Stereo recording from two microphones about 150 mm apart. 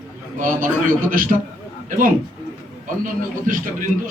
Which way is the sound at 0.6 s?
15° right (ahead or behind).